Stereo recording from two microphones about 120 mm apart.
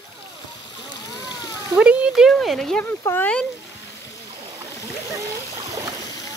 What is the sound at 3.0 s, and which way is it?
Speech, 20° left (ahead or behind).